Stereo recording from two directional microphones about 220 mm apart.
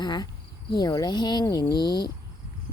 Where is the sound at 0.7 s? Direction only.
20° left (ahead or behind).